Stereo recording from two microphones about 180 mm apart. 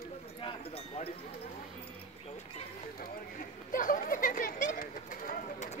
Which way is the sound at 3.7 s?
45° left (ahead or behind).